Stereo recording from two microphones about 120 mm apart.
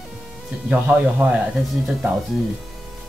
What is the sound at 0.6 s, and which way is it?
Speech, 15° right (ahead or behind).